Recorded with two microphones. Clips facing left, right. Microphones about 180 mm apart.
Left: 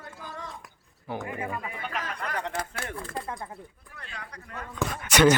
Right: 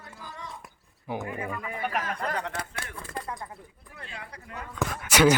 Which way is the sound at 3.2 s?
25° left (ahead or behind).